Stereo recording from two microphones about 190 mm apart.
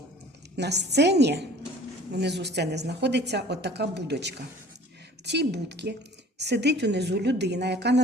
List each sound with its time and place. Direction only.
0.5 s a woman's voice: 60° right (ahead or behind)